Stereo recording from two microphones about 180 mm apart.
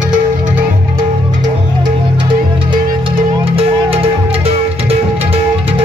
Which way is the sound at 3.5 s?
30° right (ahead or behind).